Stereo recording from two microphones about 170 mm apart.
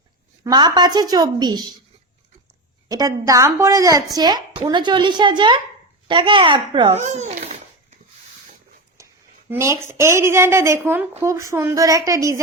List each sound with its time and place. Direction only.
0.4 s a woman's voice: 25° right (ahead or behind)
2.9 s a woman's voice: 20° right (ahead or behind)
7.0 s babbling: 45° right (ahead or behind)
9.5 s a woman's voice: 15° right (ahead or behind)